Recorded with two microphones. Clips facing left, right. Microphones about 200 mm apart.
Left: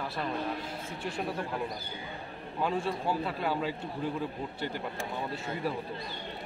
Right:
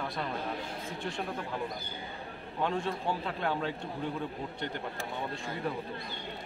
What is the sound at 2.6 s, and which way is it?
A man's voice, 5° left (ahead or behind).